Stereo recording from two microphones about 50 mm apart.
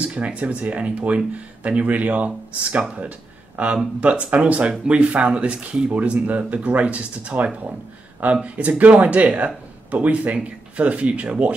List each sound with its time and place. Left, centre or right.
0.1 s speech: right